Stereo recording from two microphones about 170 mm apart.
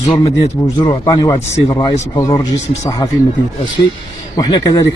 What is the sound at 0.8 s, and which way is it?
A man's voice, 25° left (ahead or behind).